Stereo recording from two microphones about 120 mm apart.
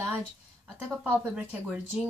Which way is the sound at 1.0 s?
10° right (ahead or behind).